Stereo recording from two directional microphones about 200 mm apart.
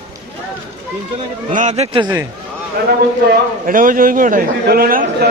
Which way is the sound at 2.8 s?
50° right (ahead or behind).